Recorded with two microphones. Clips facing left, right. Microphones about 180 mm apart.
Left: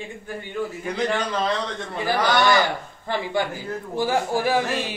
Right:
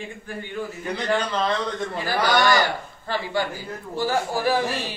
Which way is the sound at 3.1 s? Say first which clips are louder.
Left 1 dB; 20° left (ahead or behind).